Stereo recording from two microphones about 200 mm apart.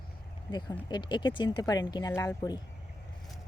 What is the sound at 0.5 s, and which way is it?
Speech, 20° left (ahead or behind).